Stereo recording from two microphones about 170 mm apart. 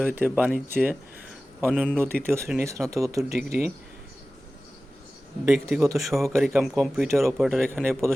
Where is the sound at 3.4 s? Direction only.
65° right (ahead or behind).